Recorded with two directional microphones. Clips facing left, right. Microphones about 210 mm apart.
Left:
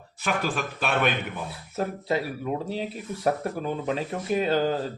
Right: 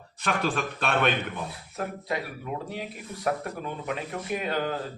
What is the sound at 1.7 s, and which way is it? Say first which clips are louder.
A man's voice: left 5 dB; 30° left (ahead or behind).